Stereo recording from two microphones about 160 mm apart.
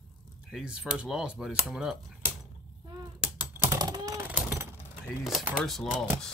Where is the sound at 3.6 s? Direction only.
20° right (ahead or behind).